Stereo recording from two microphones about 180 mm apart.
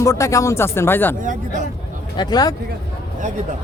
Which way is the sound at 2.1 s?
20° left (ahead or behind).